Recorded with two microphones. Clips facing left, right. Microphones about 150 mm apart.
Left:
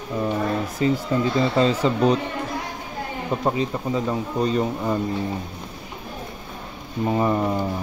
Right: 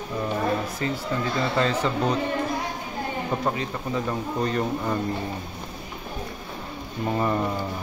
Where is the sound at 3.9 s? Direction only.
10° left (ahead or behind).